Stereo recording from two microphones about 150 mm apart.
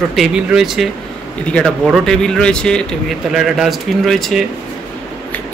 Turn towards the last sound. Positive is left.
turn(degrees=0)  # may be behind; listen again after turning